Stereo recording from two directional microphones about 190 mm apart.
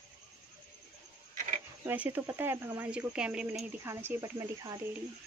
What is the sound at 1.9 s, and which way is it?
Speech, 10° right (ahead or behind).